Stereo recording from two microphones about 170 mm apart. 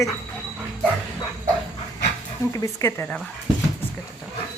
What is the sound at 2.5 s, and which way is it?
Speech, 20° left (ahead or behind).